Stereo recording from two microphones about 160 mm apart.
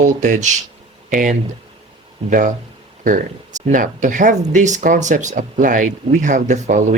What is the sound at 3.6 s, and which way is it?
Speech, 55° right (ahead or behind).